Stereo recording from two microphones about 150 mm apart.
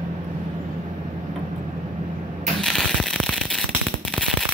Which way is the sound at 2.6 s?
Centre (ahead or behind).